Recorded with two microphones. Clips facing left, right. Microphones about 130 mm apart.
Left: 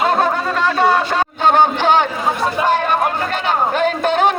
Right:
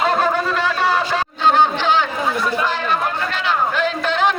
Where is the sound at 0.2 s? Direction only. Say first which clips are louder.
Left 2 dB; 55° left (ahead or behind).